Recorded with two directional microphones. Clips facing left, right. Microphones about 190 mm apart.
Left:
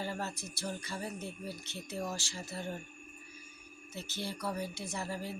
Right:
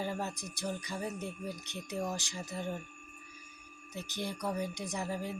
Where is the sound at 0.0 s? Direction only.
15° right (ahead or behind).